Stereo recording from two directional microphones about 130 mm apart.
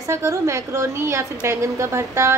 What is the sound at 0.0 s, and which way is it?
A woman's voice, 25° right (ahead or behind).